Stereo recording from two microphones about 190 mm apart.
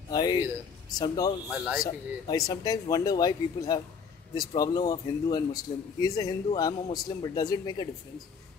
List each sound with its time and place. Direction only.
0.1 s speech: 20° left (ahead or behind)
1.5 s a man's voice: 5° right (ahead or behind)
2.2 s speech: 20° left (ahead or behind)